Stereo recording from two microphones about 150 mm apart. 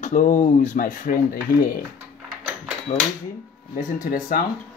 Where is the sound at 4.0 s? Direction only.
75° left (ahead or behind).